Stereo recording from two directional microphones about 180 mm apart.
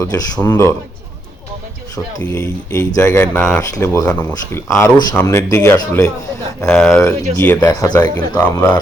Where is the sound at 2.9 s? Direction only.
15° left (ahead or behind).